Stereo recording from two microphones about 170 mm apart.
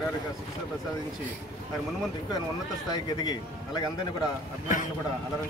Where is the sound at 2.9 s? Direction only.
25° left (ahead or behind).